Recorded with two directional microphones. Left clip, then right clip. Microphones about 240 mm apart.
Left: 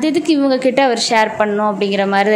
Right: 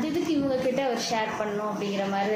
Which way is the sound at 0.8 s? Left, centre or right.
Left.